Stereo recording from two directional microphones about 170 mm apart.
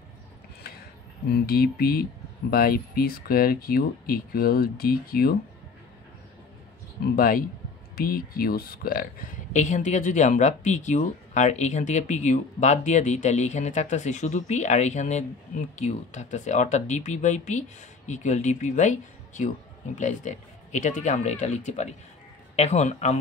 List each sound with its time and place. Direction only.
1.3 s speech: 65° left (ahead or behind)
7.2 s speech: 60° left (ahead or behind); by 23.1 s 40° left (ahead or behind)